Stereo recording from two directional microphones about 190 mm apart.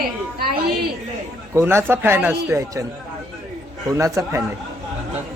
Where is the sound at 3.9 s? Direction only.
15° right (ahead or behind).